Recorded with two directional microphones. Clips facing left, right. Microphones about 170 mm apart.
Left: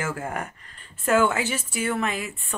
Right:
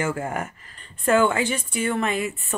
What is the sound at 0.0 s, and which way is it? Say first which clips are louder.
A woman's voice: right 3 dB; centre (ahead or behind).